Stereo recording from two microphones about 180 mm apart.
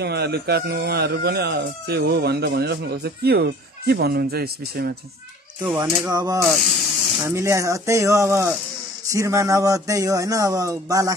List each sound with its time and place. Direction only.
0.0 s speech: 65° right (ahead or behind)
5.8 s speech: 20° right (ahead or behind)